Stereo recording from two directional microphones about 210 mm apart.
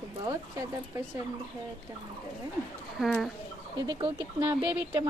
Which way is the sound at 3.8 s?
25° right (ahead or behind).